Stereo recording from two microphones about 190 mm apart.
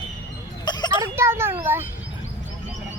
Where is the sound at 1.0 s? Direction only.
15° right (ahead or behind).